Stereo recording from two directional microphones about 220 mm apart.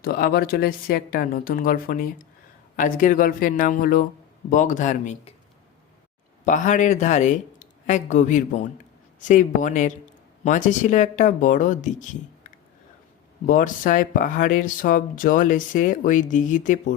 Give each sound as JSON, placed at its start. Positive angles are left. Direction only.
{"t": 0.0, "sound": "speech", "side_deg": 45}
{"t": 6.4, "sound": "speech", "side_deg": 35}
{"t": 13.5, "sound": "speech", "side_deg": 35}